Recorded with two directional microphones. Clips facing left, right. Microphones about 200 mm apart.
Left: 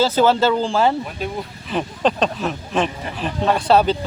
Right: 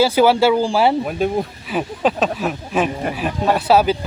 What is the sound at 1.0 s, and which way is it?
Speech, 50° right (ahead or behind).